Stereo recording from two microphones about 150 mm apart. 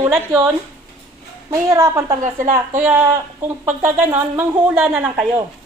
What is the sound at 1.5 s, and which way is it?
Speech, 20° right (ahead or behind).